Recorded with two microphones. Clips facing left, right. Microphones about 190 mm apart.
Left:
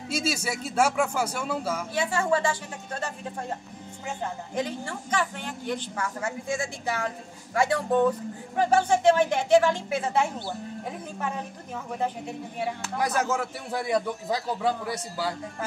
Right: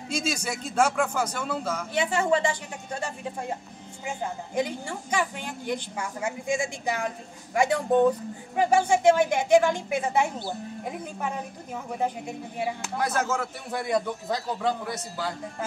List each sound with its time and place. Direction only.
0.1 s a man's voice: 5° left (ahead or behind)
2.0 s speech: 20° right (ahead or behind)
13.0 s a man's voice: 15° left (ahead or behind)